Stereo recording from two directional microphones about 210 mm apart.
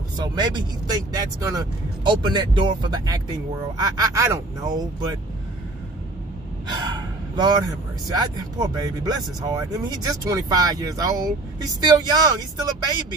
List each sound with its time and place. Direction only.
0.2 s speech: 20° right (ahead or behind)
6.9 s gasp: 20° right (ahead or behind)
8.1 s speech: 20° right (ahead or behind)